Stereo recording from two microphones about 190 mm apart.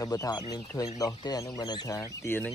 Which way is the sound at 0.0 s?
20° left (ahead or behind).